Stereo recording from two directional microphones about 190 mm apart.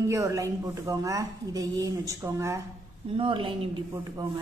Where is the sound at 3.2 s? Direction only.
25° right (ahead or behind).